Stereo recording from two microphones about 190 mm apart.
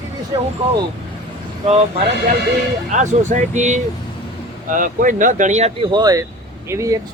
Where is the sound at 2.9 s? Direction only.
40° right (ahead or behind).